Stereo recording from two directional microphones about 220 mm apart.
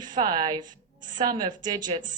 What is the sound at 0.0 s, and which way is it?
A woman's voice, 20° right (ahead or behind).